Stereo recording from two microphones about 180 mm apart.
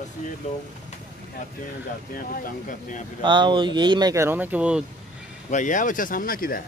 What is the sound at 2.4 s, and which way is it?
Speech, 45° left (ahead or behind).